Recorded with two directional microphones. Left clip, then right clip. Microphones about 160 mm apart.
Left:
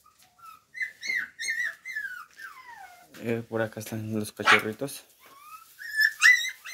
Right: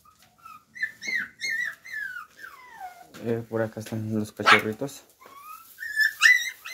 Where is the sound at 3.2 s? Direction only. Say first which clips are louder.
Right 2 dB; 20° left (ahead or behind).